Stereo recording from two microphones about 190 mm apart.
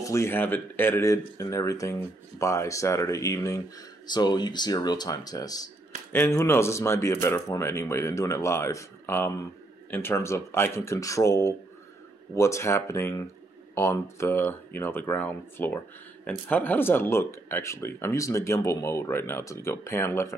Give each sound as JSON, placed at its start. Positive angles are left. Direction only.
{"t": 0.0, "sound": "speech", "side_deg": 15}